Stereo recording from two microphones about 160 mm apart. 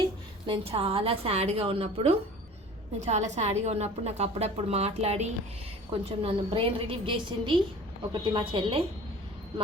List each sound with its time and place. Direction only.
0.4 s a woman's voice: 35° right (ahead or behind)